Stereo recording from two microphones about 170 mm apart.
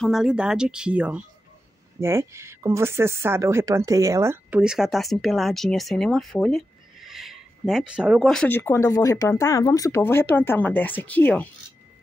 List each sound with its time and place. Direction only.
0.0 s speech: centre (ahead or behind)
4.6 s speech: 5° right (ahead or behind)